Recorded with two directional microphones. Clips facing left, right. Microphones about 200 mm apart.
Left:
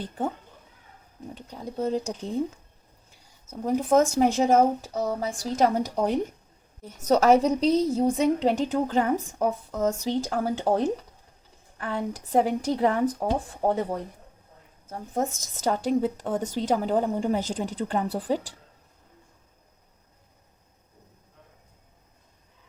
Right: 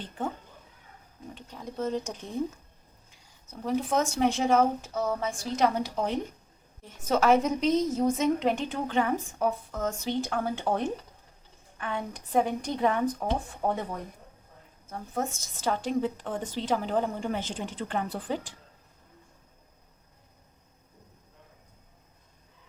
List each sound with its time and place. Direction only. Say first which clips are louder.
1.4 s a woman's voice: left 3 dB; 35° left (ahead or behind)
3.7 s a woman's voice: left 6 dB; 45° left (ahead or behind)